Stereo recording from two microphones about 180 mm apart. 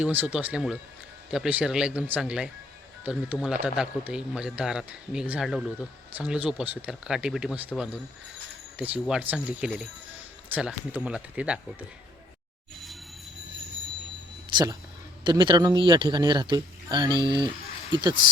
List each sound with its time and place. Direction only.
0.0 s speech: 10° right (ahead or behind)
14.5 s a man's voice: 20° right (ahead or behind)